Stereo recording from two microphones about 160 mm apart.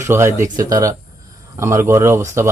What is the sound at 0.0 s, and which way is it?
Speech, 15° right (ahead or behind).